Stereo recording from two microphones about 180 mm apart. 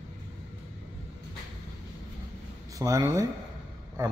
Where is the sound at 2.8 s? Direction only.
15° right (ahead or behind).